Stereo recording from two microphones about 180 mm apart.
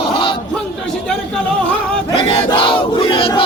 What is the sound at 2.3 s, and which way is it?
Battle cry, 30° left (ahead or behind).